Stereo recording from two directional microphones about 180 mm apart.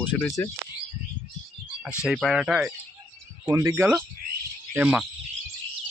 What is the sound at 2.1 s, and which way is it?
Speech, centre (ahead or behind).